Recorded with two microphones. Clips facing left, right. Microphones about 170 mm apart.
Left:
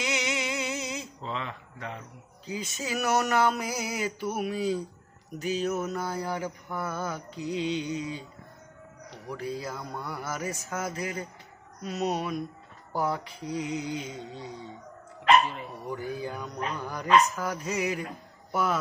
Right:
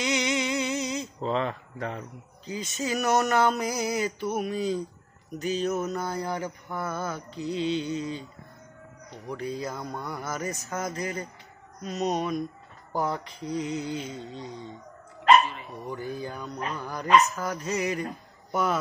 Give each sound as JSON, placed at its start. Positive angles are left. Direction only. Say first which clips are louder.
{"t": 0.0, "sound": "a sound", "louder": "right 4 dB", "side_deg": 5}
{"t": 1.2, "sound": "speech", "louder": "right 11 dB", "side_deg": -40}
{"t": 2.4, "sound": "mantra", "louder": "right 3 dB", "side_deg": 10}
{"t": 9.3, "sound": "mantra", "louder": "right 2 dB", "side_deg": 5}
{"t": 16.0, "sound": "mantra", "louder": "even", "side_deg": 10}
{"t": 18.5, "sound": "speech", "louder": "right 1 dB", "side_deg": 5}